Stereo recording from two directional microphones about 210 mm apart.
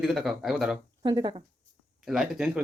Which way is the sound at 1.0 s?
20° right (ahead or behind).